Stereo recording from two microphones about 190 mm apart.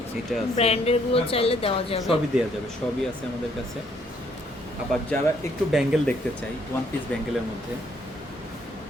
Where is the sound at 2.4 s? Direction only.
5° right (ahead or behind).